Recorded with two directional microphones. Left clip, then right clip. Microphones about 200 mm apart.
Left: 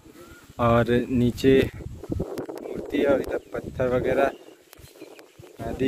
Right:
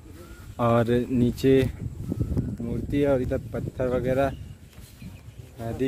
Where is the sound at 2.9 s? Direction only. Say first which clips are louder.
Left 1 dB; 5° right (ahead or behind).